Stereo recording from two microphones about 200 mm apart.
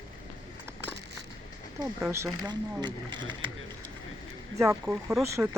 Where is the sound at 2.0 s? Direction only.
15° right (ahead or behind).